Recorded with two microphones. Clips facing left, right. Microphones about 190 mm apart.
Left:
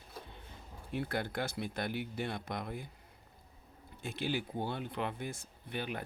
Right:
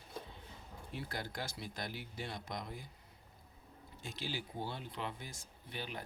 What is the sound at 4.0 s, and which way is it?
Speech, 60° left (ahead or behind).